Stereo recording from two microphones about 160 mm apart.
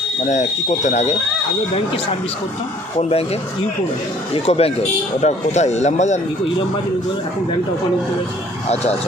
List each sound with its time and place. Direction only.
0.3 s speech: 45° left (ahead or behind)
3.0 s speech: 40° left (ahead or behind)
4.4 s speech: 40° left (ahead or behind)
8.7 s speech: 40° left (ahead or behind)